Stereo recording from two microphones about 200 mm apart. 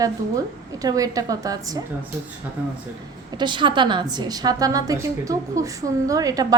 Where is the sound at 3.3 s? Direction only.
25° right (ahead or behind).